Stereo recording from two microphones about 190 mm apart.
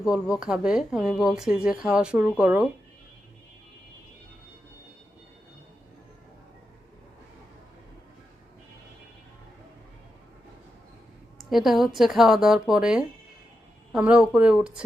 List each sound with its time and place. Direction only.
0.0 s speech: 5° right (ahead or behind)
11.4 s a woman's voice: centre (ahead or behind)